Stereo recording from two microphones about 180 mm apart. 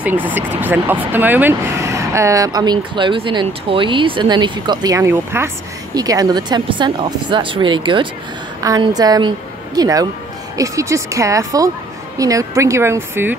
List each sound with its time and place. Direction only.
0.0 s speech: 10° right (ahead or behind)